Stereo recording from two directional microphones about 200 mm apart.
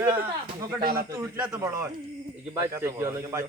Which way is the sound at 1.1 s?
15° right (ahead or behind).